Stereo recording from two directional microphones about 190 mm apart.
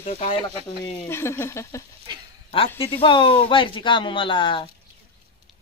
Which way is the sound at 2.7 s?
30° left (ahead or behind).